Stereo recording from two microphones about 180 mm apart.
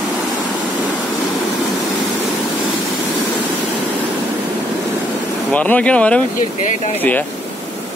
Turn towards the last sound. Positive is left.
turn(degrees=5)  # may be behind; listen again after turning